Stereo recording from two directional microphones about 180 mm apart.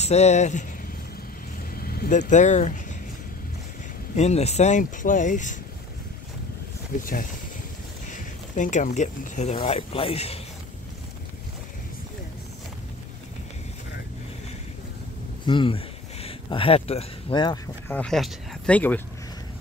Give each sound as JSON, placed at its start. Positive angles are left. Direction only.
{"t": 0.0, "sound": "speech", "side_deg": 40}
{"t": 1.8, "sound": "vehicle", "side_deg": 55}
{"t": 2.1, "sound": "speech", "side_deg": 40}
{"t": 4.2, "sound": "speech", "side_deg": 35}
{"t": 8.1, "sound": "speech", "side_deg": 45}
{"t": 15.4, "sound": "speech", "side_deg": 25}
{"t": 17.8, "sound": "speech", "side_deg": 5}